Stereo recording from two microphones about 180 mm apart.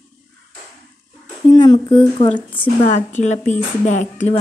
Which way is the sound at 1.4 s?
20° left (ahead or behind).